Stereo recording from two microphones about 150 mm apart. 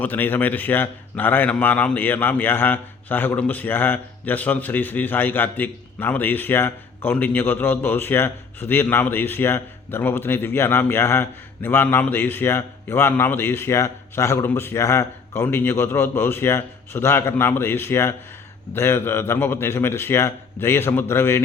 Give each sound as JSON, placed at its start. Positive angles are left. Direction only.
{"t": 0.0, "sound": "a man's voice", "side_deg": 10}